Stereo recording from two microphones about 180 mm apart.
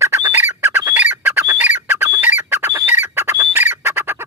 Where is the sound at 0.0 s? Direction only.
15° right (ahead or behind).